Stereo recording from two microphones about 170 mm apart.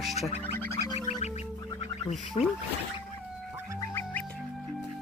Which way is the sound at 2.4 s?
35° left (ahead or behind).